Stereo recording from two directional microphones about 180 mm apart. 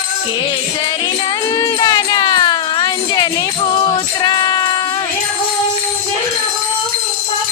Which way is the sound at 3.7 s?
25° left (ahead or behind).